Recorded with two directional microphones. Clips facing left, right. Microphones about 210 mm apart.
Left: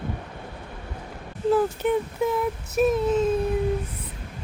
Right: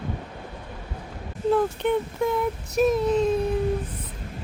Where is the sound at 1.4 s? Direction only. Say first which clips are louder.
Even; 5° left (ahead or behind).